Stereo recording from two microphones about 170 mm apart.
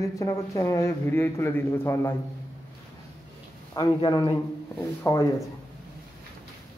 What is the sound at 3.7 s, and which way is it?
Speech, 25° left (ahead or behind).